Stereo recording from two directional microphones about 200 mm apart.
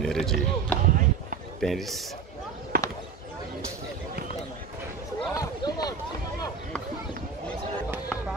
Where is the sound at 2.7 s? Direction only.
50° right (ahead or behind).